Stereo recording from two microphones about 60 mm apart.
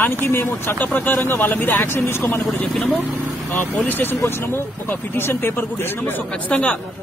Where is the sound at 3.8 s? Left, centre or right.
Left.